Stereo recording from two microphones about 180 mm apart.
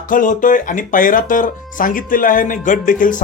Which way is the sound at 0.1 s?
45° left (ahead or behind).